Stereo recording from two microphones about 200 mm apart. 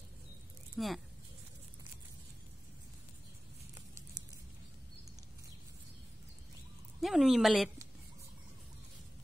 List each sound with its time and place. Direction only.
0.7 s speech: centre (ahead or behind)
7.0 s speech: centre (ahead or behind)